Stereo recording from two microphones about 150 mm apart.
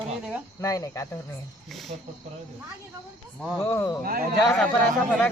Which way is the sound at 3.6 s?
20° left (ahead or behind).